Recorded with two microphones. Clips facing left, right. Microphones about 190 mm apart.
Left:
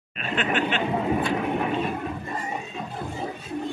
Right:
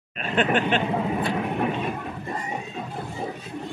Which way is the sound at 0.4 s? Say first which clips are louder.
Right 3 dB; 45° right (ahead or behind).